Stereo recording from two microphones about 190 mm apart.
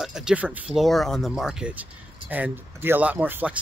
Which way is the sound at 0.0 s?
5° right (ahead or behind).